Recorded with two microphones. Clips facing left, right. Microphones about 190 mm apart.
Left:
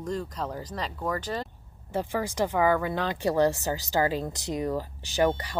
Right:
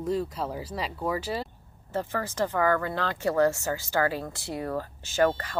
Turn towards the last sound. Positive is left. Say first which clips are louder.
# even
turn(degrees=15)  # may be behind; listen again after turning